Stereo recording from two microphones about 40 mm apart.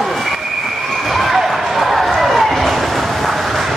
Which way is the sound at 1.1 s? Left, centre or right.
Centre.